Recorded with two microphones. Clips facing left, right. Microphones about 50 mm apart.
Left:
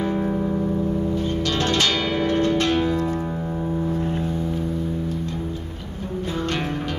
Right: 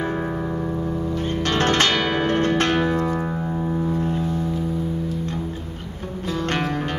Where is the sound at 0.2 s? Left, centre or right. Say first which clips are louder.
Left 2 dB; right.